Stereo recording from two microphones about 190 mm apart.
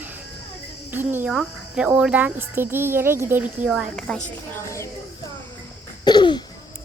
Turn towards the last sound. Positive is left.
turn(degrees=25)  # may be behind; listen again after turning